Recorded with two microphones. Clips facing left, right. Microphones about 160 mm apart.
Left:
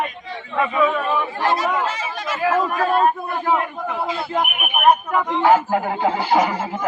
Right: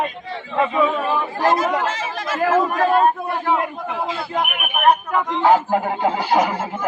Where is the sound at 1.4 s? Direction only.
40° right (ahead or behind).